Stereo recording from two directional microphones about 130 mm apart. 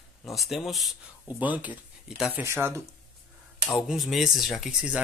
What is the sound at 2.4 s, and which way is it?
Speech, 20° right (ahead or behind).